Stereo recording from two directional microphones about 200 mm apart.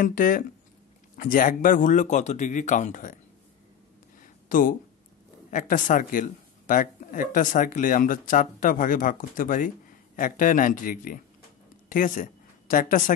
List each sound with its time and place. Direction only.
0.0 s speech: 40° left (ahead or behind)
4.2 s a sound: 40° left (ahead or behind)
5.5 s speech: 40° left (ahead or behind)